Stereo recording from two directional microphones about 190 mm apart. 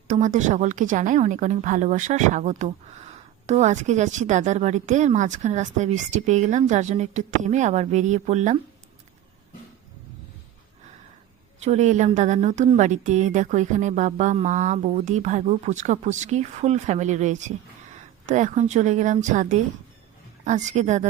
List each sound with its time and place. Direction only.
0.1 s a woman's voice: 40° right (ahead or behind)
11.6 s a woman's voice: 35° right (ahead or behind)